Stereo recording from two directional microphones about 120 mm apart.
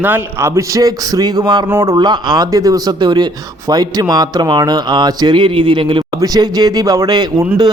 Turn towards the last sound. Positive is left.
turn(degrees=-35)  # may be behind; listen again after turning